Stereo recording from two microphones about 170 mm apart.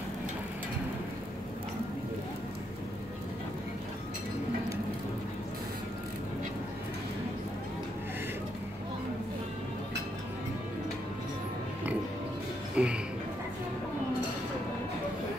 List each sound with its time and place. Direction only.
12.7 s music: 5° right (ahead or behind)